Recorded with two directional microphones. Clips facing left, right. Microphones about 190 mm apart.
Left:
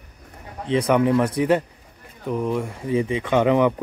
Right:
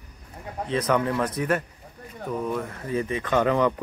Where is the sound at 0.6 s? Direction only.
15° left (ahead or behind).